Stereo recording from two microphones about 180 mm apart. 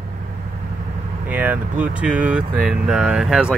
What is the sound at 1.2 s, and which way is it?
Speech, 10° right (ahead or behind).